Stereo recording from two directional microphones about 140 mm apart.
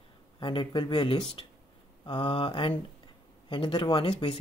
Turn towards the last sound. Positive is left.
turn(degrees=40)  # may be behind; listen again after turning